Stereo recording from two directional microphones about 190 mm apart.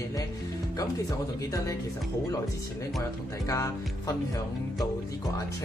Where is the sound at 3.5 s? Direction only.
20° left (ahead or behind).